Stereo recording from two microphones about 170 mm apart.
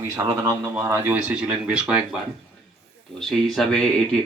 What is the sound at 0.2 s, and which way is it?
Speech, 15° right (ahead or behind).